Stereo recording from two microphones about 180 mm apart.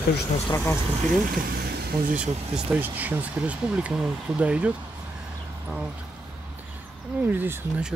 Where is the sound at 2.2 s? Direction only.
5° right (ahead or behind).